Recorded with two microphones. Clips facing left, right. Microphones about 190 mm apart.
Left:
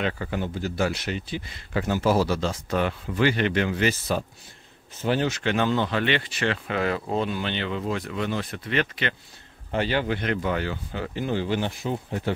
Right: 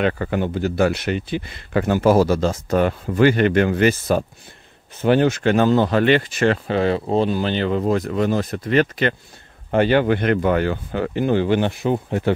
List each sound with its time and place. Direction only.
0.0 s speech: 60° right (ahead or behind); by 6.6 s 45° right (ahead or behind)
6.7 s speech: 30° right (ahead or behind)
9.7 s speech: 55° right (ahead or behind)